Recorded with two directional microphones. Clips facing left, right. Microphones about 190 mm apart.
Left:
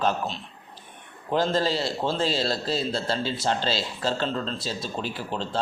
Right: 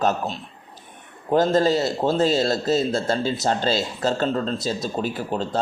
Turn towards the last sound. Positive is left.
turn(degrees=-45)  # may be behind; listen again after turning